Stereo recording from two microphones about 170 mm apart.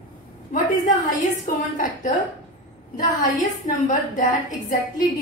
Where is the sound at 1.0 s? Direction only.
50° left (ahead or behind).